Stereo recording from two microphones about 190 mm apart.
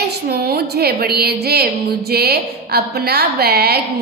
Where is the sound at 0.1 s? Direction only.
55° right (ahead or behind).